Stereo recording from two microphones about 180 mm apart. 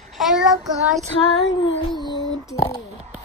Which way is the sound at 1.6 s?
30° left (ahead or behind).